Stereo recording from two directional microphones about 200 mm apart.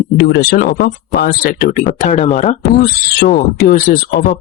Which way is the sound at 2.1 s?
30° left (ahead or behind).